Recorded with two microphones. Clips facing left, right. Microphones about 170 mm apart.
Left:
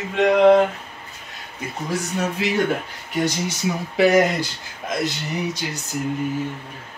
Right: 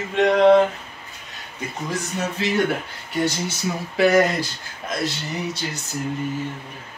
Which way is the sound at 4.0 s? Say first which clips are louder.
Left 1 dB; 20° left (ahead or behind).